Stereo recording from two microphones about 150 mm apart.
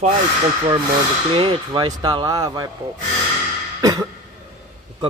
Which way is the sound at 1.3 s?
35° right (ahead or behind).